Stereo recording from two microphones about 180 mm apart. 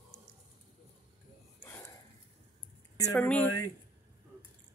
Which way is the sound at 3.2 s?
5° left (ahead or behind).